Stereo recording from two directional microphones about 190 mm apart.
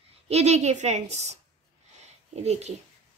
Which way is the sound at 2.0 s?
35° right (ahead or behind).